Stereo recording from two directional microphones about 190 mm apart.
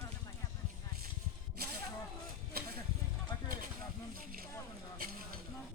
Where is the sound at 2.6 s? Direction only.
55° right (ahead or behind).